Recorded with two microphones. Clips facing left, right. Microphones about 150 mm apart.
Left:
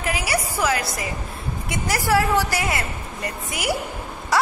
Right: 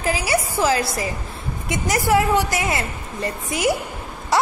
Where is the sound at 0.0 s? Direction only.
25° right (ahead or behind).